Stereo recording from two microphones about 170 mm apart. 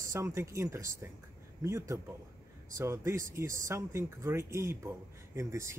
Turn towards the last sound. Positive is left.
turn(degrees=-15)  # may be behind; listen again after turning